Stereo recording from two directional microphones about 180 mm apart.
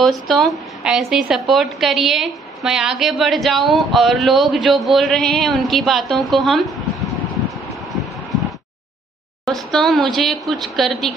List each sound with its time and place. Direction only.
0.0 s a woman's voice: centre (ahead or behind)
8.0 s a sound: centre (ahead or behind)
9.5 s a woman's voice: centre (ahead or behind)